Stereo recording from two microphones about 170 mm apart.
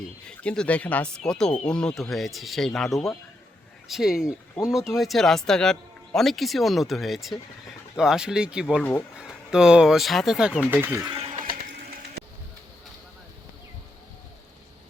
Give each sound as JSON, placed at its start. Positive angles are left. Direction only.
{"t": 0.3, "sound": "speech", "side_deg": 5}
{"t": 8.8, "sound": "speech", "side_deg": 10}
{"t": 9.1, "sound": "speech", "side_deg": -5}
{"t": 11.0, "sound": "speech", "side_deg": -30}